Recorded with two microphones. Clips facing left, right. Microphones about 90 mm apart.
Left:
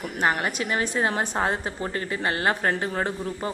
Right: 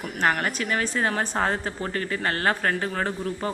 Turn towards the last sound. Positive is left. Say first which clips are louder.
# even
turn(degrees=15)  # may be behind; listen again after turning